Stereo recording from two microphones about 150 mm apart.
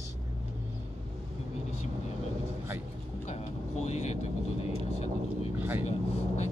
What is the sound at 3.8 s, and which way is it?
Vehicle, 45° left (ahead or behind).